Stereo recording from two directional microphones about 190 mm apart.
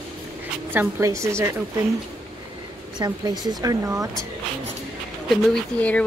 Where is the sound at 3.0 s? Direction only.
20° right (ahead or behind).